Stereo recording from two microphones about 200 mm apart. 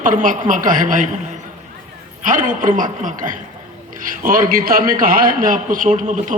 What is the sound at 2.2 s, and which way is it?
A man's voice, 40° right (ahead or behind).